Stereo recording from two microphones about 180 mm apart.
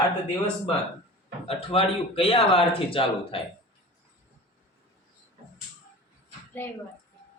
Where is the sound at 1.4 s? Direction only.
30° left (ahead or behind).